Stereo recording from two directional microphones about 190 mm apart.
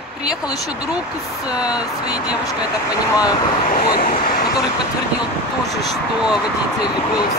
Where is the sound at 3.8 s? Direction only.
50° left (ahead or behind).